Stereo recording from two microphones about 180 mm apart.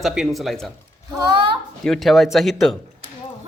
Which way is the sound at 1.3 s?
30° right (ahead or behind).